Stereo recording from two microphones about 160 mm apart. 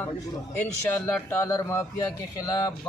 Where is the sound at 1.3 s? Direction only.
15° left (ahead or behind).